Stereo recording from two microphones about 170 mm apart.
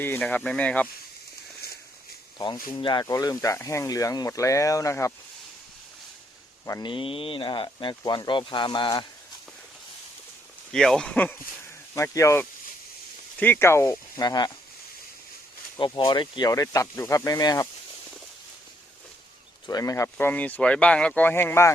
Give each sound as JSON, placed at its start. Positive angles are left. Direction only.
{"t": 0.0, "sound": "speech", "side_deg": 10}
{"t": 1.6, "sound": "a sound", "side_deg": 65}
{"t": 2.4, "sound": "speech", "side_deg": 25}
{"t": 6.7, "sound": "speech", "side_deg": 25}
{"t": 10.7, "sound": "speech", "side_deg": 5}
{"t": 15.8, "sound": "speech", "side_deg": 30}
{"t": 19.6, "sound": "speech", "side_deg": 20}